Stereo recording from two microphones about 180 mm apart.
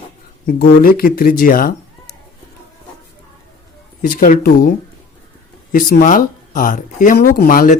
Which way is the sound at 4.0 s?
50° left (ahead or behind).